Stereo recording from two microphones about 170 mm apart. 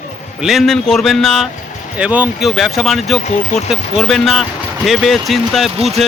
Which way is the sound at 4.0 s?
Centre (ahead or behind).